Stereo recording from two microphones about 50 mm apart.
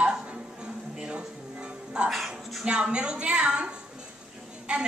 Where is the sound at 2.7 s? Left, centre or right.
Centre.